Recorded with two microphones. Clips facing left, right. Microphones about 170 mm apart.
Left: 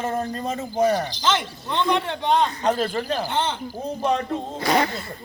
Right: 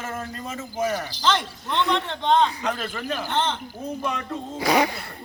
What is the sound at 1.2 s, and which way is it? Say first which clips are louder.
A man's voice: even; 5° left (ahead or behind).